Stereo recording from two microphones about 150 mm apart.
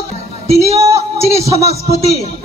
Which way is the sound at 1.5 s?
45° left (ahead or behind).